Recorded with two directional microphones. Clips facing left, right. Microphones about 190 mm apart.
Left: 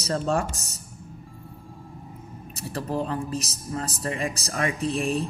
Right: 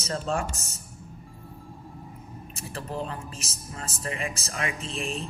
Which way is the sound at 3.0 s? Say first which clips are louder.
Left 7 dB; 40° left (ahead or behind).